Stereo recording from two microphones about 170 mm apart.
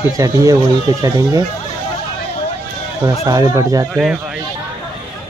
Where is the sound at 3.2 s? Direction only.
20° right (ahead or behind).